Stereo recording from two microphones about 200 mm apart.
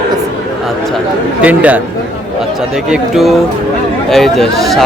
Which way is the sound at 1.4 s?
5° right (ahead or behind).